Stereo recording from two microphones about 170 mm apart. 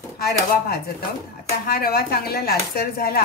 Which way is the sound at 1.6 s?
60° left (ahead or behind).